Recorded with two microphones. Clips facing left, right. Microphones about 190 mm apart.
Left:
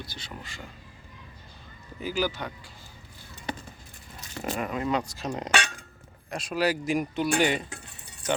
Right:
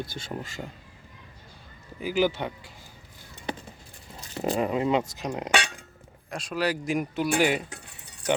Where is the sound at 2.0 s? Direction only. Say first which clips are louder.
Right 4 dB; 15° right (ahead or behind).